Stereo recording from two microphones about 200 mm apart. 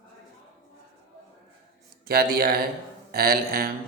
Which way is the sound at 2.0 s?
50° right (ahead or behind).